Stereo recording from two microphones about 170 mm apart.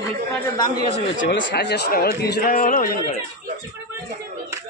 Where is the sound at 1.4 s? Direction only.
75° left (ahead or behind); by 3.2 s 55° left (ahead or behind).